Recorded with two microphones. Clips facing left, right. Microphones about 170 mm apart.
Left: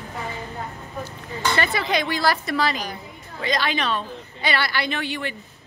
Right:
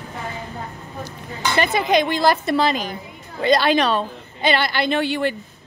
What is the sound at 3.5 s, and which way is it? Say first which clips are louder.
Speech: right 6 dB; 35° right (ahead or behind).